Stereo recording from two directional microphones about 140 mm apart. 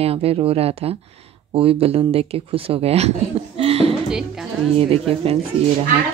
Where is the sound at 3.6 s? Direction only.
45° right (ahead or behind).